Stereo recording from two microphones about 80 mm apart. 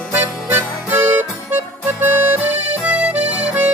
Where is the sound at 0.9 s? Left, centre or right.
Right.